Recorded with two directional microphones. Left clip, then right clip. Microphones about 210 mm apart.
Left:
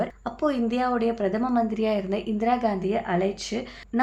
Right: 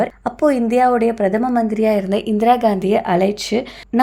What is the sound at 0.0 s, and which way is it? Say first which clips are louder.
Speech: right 10 dB; 35° right (ahead or behind).